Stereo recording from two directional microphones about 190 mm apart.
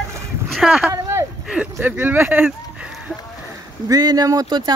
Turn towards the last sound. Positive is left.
turn(degrees=-20)  # may be behind; listen again after turning